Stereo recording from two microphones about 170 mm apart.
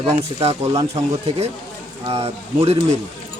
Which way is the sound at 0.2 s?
35° right (ahead or behind).